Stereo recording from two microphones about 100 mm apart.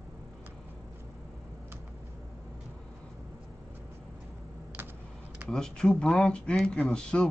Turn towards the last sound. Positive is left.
turn(degrees=10)  # may be behind; listen again after turning